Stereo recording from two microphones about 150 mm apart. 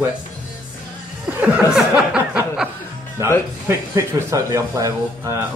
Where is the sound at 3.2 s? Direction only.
20° right (ahead or behind).